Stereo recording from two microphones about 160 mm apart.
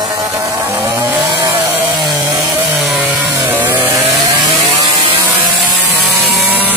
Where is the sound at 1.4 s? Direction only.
15° right (ahead or behind).